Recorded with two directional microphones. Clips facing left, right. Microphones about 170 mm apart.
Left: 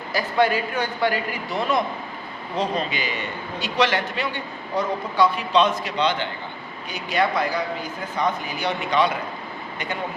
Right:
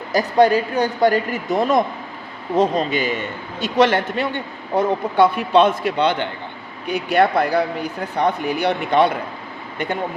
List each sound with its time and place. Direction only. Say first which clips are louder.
0.1 s a man's voice: right 6 dB; 40° right (ahead or behind)